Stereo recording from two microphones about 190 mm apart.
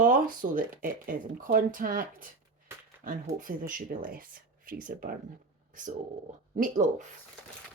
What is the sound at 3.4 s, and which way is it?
Speech, 45° right (ahead or behind).